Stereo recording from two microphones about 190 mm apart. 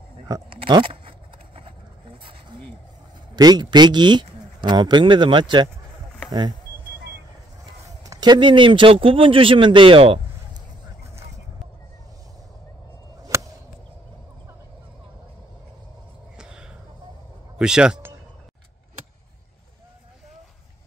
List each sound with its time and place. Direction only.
0.3 s a sound: 25° right (ahead or behind)
3.3 s speech: 20° right (ahead or behind)
8.0 s speech: 20° right (ahead or behind)
13.3 s chop: 15° right (ahead or behind)
16.3 s a sound: 5° right (ahead or behind)
17.6 s speech: 5° right (ahead or behind)